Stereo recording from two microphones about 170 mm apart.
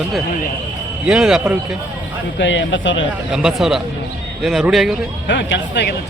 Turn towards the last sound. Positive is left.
turn(degrees=85)